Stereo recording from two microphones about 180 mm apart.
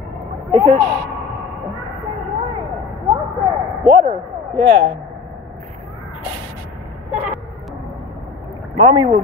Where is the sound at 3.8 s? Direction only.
25° right (ahead or behind).